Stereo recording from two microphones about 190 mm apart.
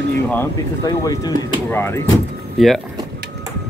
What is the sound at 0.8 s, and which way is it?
Speech, 20° left (ahead or behind).